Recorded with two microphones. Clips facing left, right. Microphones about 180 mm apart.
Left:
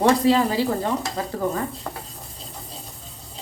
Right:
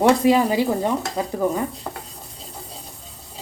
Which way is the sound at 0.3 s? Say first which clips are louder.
Right 2 dB; 15° right (ahead or behind).